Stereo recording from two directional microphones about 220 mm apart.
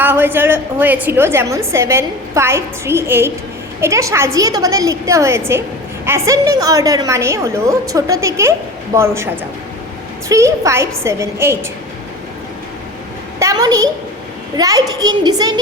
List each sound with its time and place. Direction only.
0.0 s a woman's voice: 10° right (ahead or behind)
13.4 s a woman's voice: 15° right (ahead or behind)